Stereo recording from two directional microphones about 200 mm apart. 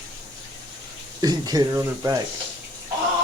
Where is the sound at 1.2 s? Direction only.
20° right (ahead or behind).